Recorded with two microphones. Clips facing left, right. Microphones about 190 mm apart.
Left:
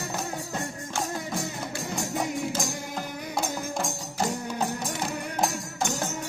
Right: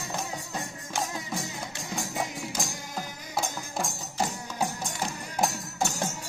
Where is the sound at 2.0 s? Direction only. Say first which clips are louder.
Left 4 dB; centre (ahead or behind).